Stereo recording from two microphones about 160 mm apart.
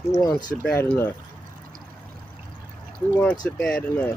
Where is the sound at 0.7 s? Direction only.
15° left (ahead or behind).